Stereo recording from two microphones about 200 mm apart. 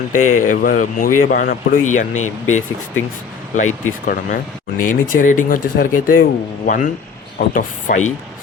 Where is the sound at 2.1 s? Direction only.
90° left.